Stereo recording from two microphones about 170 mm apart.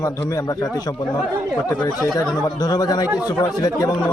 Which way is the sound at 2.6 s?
20° left (ahead or behind).